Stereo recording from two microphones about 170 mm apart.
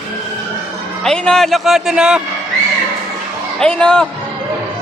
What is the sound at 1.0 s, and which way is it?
A man's voice, 5° left (ahead or behind).